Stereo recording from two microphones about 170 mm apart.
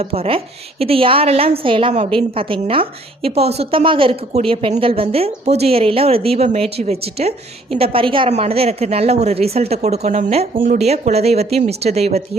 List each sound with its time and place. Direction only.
0.0 s a woman's voice: 35° right (ahead or behind)